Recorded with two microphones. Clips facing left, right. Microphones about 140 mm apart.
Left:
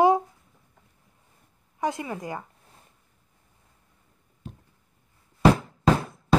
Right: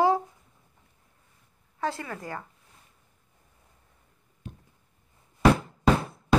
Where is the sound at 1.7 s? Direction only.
15° left (ahead or behind).